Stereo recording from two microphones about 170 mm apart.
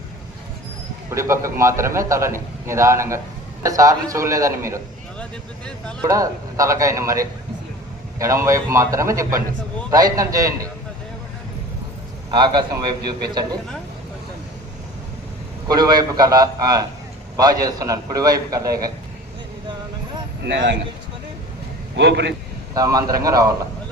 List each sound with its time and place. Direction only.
1.1 s a man's voice: 15° right (ahead or behind)
5.2 s speech: 5° left (ahead or behind)
6.1 s a man's voice: 20° right (ahead or behind)
12.3 s a man's voice: 25° right (ahead or behind)
15.6 s a man's voice: 25° right (ahead or behind)
20.4 s a man's voice: 90° right
21.9 s a man's voice: 90° right
22.7 s a man's voice: 20° right (ahead or behind)